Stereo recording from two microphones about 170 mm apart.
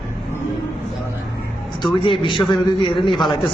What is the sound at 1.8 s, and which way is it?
A man's voice, 30° left (ahead or behind).